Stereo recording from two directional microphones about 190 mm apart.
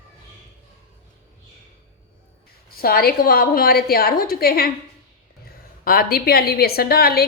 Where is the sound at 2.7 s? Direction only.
50° left (ahead or behind).